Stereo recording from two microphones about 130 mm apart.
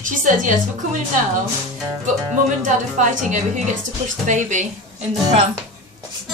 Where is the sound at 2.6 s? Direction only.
80° right.